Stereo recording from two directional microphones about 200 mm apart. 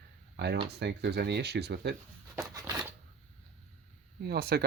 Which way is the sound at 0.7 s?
55° right (ahead or behind).